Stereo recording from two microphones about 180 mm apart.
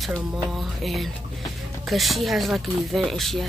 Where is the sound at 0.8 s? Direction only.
Centre (ahead or behind).